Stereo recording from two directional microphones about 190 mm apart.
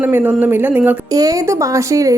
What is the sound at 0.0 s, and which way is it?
Speech, 10° right (ahead or behind).